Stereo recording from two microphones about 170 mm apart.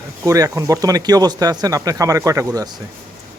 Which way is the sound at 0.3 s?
20° right (ahead or behind).